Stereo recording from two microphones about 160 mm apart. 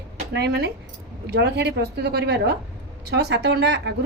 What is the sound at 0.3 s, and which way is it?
A woman's voice, 90° right.